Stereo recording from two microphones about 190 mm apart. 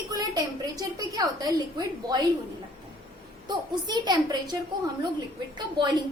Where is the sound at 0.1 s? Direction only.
20° right (ahead or behind).